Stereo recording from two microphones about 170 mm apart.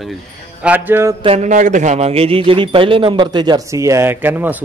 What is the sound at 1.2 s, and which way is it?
A man's voice, 35° right (ahead or behind).